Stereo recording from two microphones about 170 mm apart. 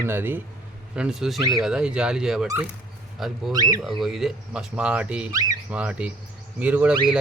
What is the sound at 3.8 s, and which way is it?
Speech, centre (ahead or behind).